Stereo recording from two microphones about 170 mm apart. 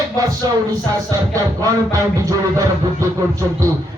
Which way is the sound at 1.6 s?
20° right (ahead or behind).